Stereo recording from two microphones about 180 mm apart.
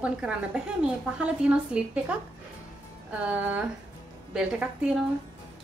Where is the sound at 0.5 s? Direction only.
5° right (ahead or behind).